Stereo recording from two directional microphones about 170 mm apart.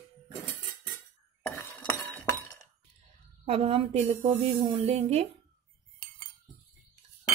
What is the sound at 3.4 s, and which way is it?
A woman's voice, 35° right (ahead or behind).